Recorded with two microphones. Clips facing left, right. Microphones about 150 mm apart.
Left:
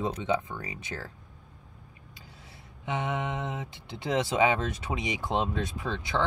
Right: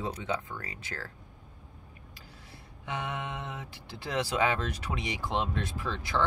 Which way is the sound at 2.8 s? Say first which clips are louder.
Left 5 dB; 20° left (ahead or behind).